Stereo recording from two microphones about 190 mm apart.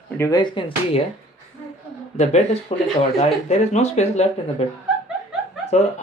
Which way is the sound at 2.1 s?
35° left (ahead or behind).